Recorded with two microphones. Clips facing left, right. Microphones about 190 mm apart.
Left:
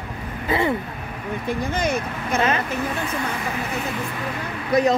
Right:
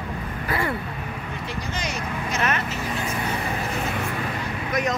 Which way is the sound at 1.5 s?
55° left (ahead or behind).